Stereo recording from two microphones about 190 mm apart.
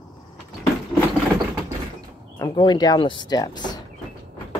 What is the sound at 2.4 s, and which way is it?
Speech, 25° left (ahead or behind).